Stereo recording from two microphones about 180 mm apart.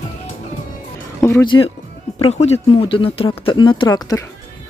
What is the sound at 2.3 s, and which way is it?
Speech, 35° left (ahead or behind).